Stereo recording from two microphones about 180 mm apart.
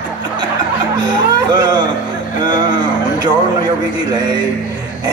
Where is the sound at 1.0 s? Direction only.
25° right (ahead or behind).